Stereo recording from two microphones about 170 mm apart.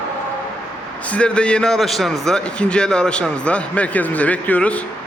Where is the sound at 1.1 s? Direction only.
5° left (ahead or behind).